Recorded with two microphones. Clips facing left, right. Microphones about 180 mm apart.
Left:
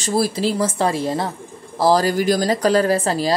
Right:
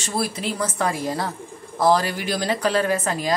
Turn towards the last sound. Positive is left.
turn(degrees=35)  # may be behind; listen again after turning